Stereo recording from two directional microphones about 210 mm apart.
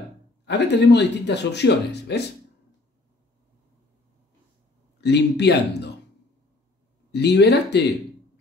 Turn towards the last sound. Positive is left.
turn(degrees=55)  # may be behind; listen again after turning